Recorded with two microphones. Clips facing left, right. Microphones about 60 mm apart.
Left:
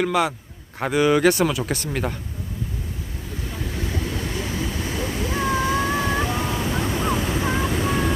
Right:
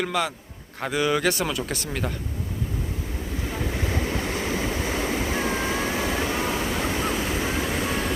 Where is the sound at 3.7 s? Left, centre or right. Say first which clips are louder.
Even; right.